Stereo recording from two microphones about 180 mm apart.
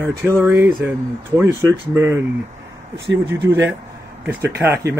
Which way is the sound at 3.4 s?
15° right (ahead or behind).